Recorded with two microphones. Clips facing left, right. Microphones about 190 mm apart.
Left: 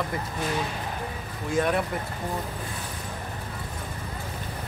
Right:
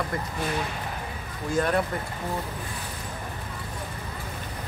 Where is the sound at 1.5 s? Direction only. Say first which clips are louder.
Even; centre (ahead or behind).